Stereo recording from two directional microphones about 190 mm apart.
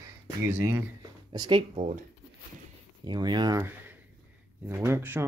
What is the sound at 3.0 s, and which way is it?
Speech, 25° right (ahead or behind).